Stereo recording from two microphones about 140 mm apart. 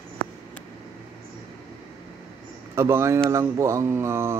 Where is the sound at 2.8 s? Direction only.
20° right (ahead or behind).